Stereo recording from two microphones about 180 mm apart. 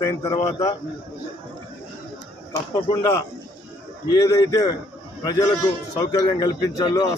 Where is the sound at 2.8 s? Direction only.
20° left (ahead or behind).